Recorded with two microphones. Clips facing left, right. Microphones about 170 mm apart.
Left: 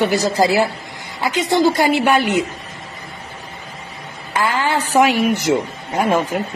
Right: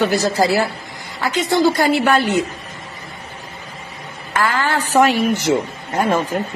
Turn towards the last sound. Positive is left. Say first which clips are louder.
# left 1 dB
turn(degrees=10)  # may be behind; listen again after turning